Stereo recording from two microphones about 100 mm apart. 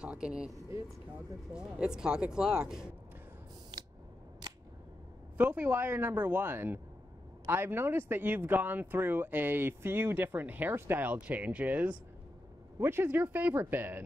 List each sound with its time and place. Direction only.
0.0 s speech: 10° right (ahead or behind)
0.5 s speech: 30° right (ahead or behind)
1.5 s speech: 10° right (ahead or behind)
5.4 s speech: 20° right (ahead or behind)